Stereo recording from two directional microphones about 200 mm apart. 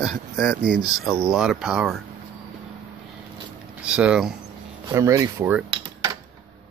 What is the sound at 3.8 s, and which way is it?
Speech, 5° right (ahead or behind).